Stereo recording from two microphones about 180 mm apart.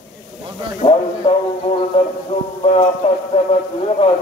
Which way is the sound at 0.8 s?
30° left (ahead or behind).